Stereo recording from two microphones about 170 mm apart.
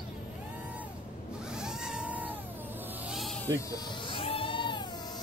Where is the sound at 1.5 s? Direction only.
5° right (ahead or behind).